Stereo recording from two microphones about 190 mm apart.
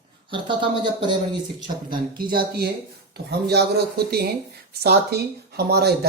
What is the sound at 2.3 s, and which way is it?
Speech, 55° right (ahead or behind).